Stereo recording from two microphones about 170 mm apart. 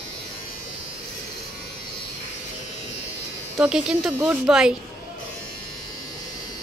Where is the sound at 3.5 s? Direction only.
5° right (ahead or behind).